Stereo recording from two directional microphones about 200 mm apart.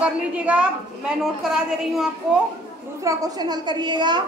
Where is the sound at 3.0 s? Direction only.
20° right (ahead or behind).